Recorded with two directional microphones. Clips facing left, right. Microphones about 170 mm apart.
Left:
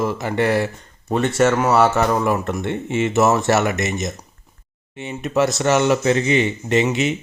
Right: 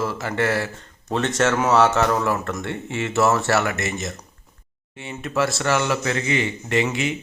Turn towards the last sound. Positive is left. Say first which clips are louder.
# left 4 dB
turn(degrees=20)  # may be behind; listen again after turning